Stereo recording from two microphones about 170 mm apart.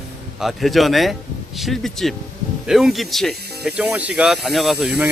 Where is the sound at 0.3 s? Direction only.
Centre (ahead or behind).